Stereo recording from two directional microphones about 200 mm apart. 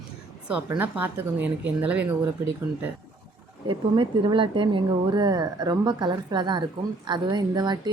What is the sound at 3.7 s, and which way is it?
Speech, 25° right (ahead or behind).